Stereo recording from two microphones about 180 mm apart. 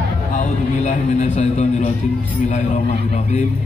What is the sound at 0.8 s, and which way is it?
A man's voice, 40° left (ahead or behind).